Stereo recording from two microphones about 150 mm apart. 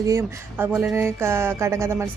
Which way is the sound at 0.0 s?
20° right (ahead or behind).